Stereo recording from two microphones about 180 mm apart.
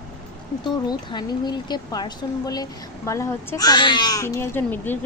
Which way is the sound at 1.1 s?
25° left (ahead or behind).